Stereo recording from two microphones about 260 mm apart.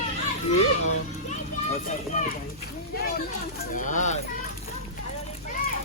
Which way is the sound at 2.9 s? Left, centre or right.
Left.